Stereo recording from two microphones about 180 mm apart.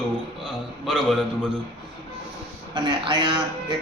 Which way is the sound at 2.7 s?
25° right (ahead or behind).